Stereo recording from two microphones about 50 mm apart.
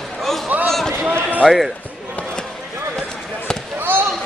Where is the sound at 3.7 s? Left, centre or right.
Right.